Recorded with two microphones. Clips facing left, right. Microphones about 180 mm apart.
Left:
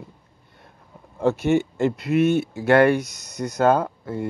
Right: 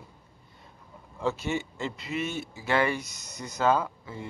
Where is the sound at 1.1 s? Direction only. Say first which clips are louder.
Left 10 dB; 60° left (ahead or behind).